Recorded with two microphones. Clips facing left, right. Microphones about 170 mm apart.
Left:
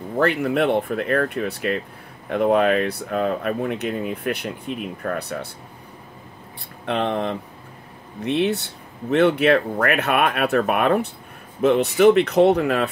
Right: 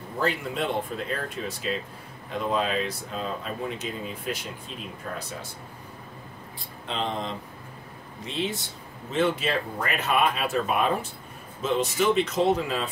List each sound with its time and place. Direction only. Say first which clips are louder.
0.2 s speech: left 8 dB; 65° left (ahead or behind)
6.9 s speech: left 8 dB; 65° left (ahead or behind)